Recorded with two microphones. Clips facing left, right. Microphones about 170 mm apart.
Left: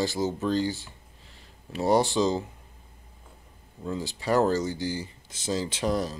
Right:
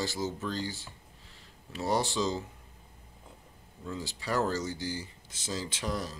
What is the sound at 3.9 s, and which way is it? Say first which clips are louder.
Speech: left 7 dB; 20° left (ahead or behind).